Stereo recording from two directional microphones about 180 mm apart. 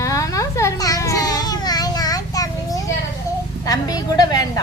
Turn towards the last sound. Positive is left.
turn(degrees=20)  # may be behind; listen again after turning